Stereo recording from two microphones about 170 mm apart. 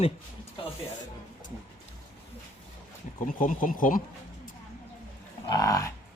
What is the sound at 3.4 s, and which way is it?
Speech, 50° left (ahead or behind).